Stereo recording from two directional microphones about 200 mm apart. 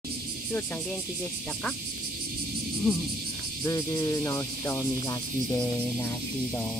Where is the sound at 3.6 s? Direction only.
15° left (ahead or behind).